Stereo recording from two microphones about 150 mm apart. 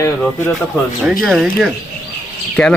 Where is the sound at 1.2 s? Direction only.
Centre (ahead or behind).